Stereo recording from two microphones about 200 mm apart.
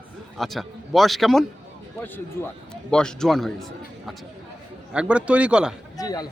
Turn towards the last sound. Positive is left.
turn(degrees=20)  # may be behind; listen again after turning